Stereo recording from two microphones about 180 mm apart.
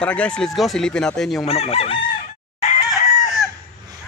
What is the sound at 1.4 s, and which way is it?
Chicken, 35° left (ahead or behind).